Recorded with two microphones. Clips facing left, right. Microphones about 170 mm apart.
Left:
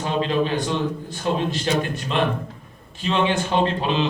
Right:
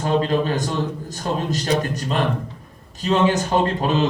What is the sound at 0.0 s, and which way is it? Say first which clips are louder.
A man's voice: right 2 dB; 45° right (ahead or behind).